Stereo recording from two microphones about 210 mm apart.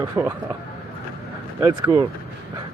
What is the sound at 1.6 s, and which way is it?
Speech, 20° right (ahead or behind).